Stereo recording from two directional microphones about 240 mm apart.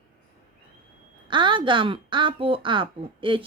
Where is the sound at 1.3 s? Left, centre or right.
Centre.